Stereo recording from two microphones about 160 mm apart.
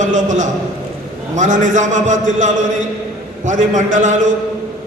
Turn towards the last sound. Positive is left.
turn(degrees=-50)  # may be behind; listen again after turning